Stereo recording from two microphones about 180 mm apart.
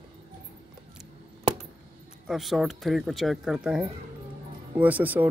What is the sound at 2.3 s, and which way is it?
Speech, centre (ahead or behind).